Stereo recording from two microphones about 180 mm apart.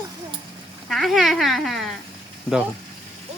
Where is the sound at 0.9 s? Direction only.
Centre (ahead or behind).